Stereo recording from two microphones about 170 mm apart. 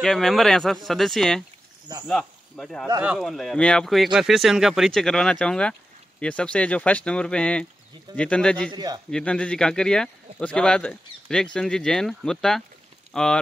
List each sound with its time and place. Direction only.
0.0 s speech: centre (ahead or behind)
8.7 s a man's voice: 25° right (ahead or behind)
9.1 s speech: 5° left (ahead or behind)